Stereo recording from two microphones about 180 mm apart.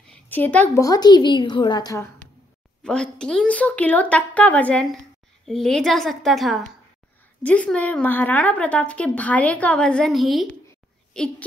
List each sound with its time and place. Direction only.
0.1 s a woman's voice: 10° left (ahead or behind)
0.8 s a woman's voice: 20° left (ahead or behind)
2.8 s a woman's voice: 5° left (ahead or behind)